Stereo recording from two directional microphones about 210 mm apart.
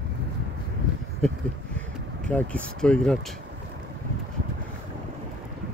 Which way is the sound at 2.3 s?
5° left (ahead or behind).